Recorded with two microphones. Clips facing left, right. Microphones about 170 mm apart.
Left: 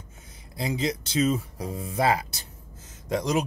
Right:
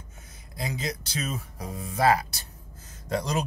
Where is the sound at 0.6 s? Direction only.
25° left (ahead or behind).